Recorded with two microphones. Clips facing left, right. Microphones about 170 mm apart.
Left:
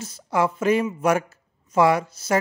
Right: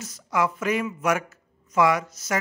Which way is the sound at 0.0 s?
30° left (ahead or behind).